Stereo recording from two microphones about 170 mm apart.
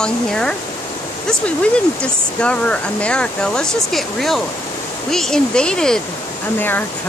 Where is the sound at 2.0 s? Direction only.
5° left (ahead or behind).